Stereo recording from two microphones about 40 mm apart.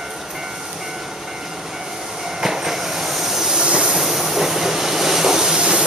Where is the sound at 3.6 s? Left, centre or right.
Centre.